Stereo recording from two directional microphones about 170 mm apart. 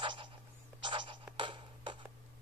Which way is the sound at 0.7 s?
25° right (ahead or behind).